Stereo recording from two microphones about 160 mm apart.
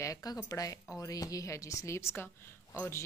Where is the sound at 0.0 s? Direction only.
20° left (ahead or behind).